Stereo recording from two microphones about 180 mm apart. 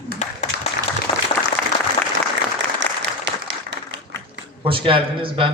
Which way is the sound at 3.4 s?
90° right.